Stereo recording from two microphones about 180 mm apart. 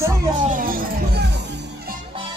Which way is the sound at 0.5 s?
50° right (ahead or behind).